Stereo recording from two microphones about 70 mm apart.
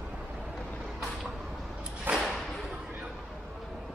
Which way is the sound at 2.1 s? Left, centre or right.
Right.